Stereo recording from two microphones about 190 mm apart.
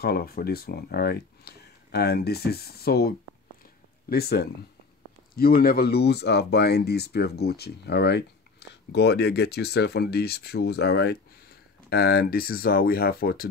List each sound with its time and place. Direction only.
0.0 s speech: 55° left (ahead or behind)